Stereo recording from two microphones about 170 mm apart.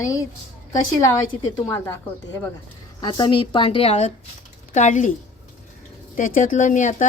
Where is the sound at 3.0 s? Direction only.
25° left (ahead or behind); by 5.1 s 45° left (ahead or behind).